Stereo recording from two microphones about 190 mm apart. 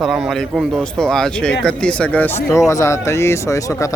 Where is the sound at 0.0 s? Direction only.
Centre (ahead or behind).